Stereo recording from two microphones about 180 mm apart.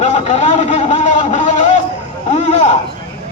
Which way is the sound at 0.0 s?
40° left (ahead or behind).